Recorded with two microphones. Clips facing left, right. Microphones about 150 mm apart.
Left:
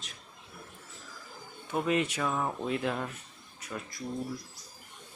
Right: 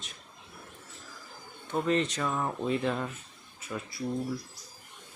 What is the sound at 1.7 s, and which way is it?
Speech, 10° left (ahead or behind).